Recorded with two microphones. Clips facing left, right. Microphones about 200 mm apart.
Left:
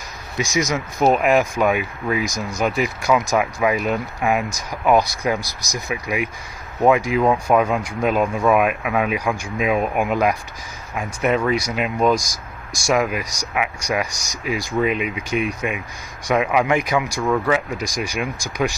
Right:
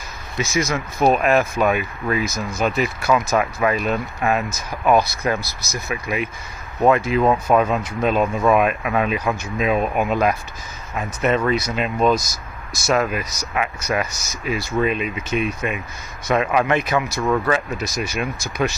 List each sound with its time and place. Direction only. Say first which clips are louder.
0.4 s speech: even; 15° left (ahead or behind)
17.2 s speech: right 1 dB; 5° right (ahead or behind)
17.5 s speech: left 1 dB; 15° left (ahead or behind)